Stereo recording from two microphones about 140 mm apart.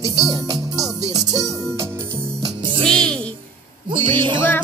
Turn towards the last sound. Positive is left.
turn(degrees=-35)  # may be behind; listen again after turning